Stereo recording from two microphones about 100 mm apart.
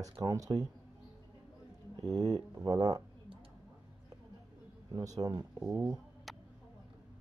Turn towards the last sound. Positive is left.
turn(degrees=0)  # may be behind; listen again after turning